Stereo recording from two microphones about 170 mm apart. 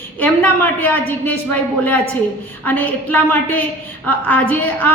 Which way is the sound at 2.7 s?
10° left (ahead or behind).